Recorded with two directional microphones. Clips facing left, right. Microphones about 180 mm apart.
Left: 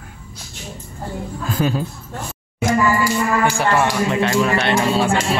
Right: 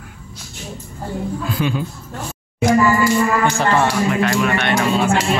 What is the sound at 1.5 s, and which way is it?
Speech, 40° left (ahead or behind).